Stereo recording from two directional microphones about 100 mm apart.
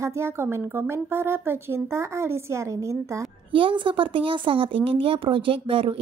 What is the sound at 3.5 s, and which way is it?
A woman's voice, 55° right (ahead or behind).